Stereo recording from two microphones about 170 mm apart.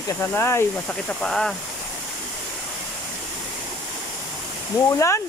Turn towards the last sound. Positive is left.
turn(degrees=15)  # may be behind; listen again after turning